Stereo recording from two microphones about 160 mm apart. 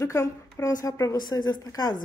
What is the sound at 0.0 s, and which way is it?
A woman's voice, 15° left (ahead or behind).